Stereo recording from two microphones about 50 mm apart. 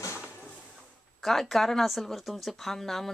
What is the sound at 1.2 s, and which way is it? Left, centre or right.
Speech, centre.